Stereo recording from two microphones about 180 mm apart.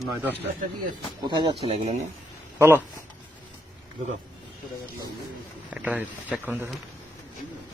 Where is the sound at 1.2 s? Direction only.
25° right (ahead or behind).